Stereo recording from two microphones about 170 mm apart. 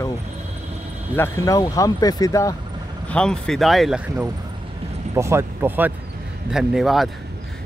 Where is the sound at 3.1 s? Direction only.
5° left (ahead or behind).